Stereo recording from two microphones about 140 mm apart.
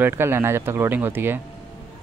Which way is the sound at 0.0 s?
15° right (ahead or behind).